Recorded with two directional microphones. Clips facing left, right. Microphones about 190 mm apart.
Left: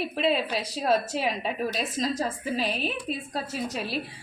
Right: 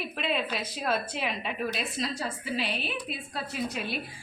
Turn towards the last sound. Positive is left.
turn(degrees=35)  # may be behind; listen again after turning